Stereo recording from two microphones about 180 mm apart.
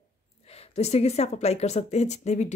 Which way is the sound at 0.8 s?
35° left (ahead or behind).